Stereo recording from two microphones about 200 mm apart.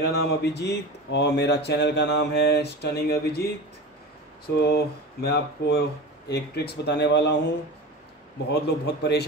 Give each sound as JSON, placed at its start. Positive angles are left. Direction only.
{"t": 0.0, "sound": "speech", "side_deg": 55}
{"t": 4.6, "sound": "speech", "side_deg": 55}